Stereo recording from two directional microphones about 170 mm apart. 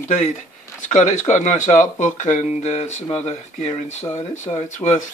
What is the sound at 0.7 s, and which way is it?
Speech, 45° left (ahead or behind).